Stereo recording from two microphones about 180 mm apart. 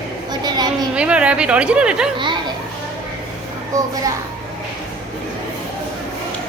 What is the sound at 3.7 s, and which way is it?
Speech, 20° right (ahead or behind).